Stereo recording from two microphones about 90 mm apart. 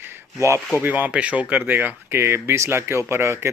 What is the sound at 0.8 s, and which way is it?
Speech, 20° right (ahead or behind).